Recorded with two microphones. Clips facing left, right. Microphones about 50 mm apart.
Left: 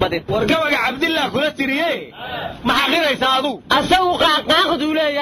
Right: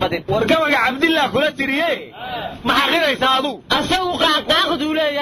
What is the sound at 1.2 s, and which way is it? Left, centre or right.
Speech, centre.